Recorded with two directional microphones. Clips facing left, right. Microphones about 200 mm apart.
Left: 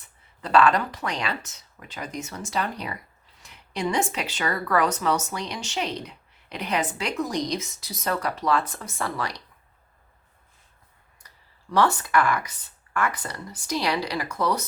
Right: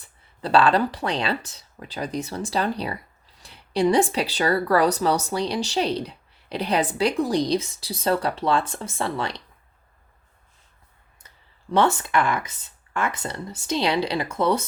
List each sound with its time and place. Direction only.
0.4 s speech: 30° right (ahead or behind)
11.7 s speech: 25° right (ahead or behind)